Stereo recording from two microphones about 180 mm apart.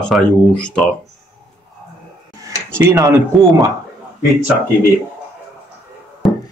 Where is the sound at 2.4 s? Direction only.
15° right (ahead or behind).